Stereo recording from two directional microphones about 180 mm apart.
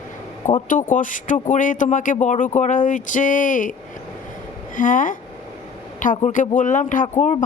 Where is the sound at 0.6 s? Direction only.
50° left (ahead or behind).